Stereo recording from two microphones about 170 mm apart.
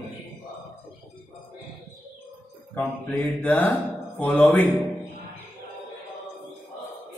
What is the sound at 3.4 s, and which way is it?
Speech, 10° left (ahead or behind).